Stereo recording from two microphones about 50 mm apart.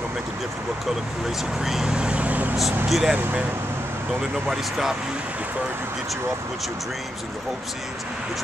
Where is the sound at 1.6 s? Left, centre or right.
Centre.